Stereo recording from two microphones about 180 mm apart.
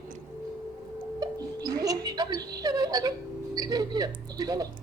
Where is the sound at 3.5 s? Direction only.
20° right (ahead or behind).